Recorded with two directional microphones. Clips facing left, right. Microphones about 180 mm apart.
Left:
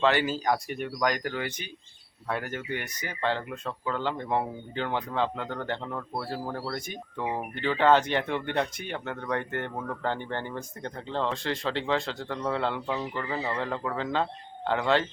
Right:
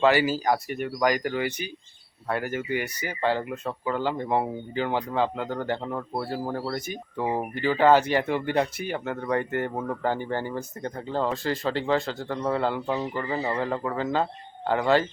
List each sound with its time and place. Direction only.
0.0 s speech: 5° right (ahead or behind)
9.7 s speech: 20° right (ahead or behind)
10.0 s speech: 5° right (ahead or behind)